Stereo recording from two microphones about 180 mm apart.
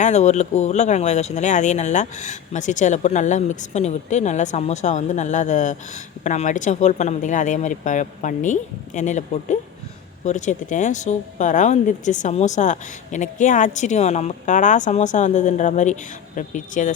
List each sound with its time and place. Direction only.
0.0 s speech: 40° left (ahead or behind)